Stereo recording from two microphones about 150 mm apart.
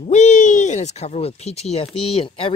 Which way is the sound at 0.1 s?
50° left (ahead or behind).